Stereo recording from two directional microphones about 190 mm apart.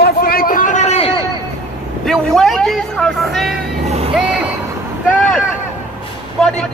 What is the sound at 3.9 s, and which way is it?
Vehicle, 35° right (ahead or behind).